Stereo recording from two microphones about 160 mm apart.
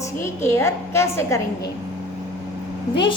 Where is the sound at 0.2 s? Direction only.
15° left (ahead or behind).